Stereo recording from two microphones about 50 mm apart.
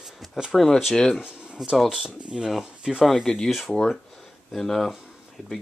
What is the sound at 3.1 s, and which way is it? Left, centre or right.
Speech, centre.